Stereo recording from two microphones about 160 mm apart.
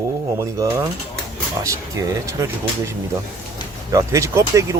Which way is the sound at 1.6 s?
20° right (ahead or behind).